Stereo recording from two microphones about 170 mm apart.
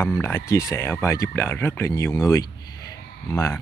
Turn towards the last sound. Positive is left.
turn(degrees=15)  # may be behind; listen again after turning